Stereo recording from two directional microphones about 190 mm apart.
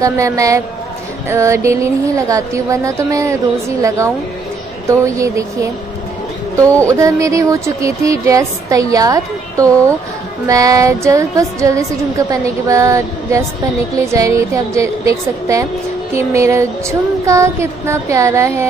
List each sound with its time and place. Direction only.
0.0 s speech: 15° right (ahead or behind)